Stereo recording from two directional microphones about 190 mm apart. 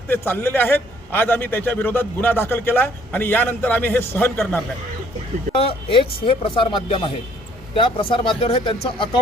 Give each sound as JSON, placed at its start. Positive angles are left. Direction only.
{"t": 0.1, "sound": "a man's voice", "side_deg": 10}
{"t": 5.9, "sound": "speech", "side_deg": 30}